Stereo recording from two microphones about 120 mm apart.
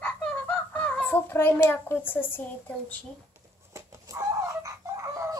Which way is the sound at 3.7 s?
25° right (ahead or behind).